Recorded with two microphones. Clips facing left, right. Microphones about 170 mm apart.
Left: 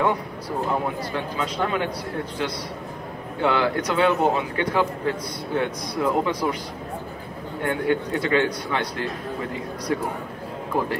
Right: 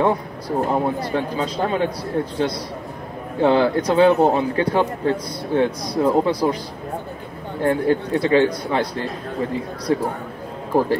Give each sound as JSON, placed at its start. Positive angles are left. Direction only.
{"t": 0.0, "sound": "a man's voice", "side_deg": -30}
{"t": 7.6, "sound": "a man's voice", "side_deg": -35}